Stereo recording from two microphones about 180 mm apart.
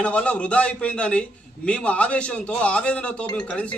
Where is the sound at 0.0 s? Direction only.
5° left (ahead or behind).